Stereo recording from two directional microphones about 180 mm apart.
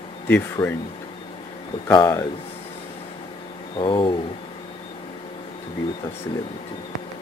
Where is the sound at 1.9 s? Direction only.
20° left (ahead or behind).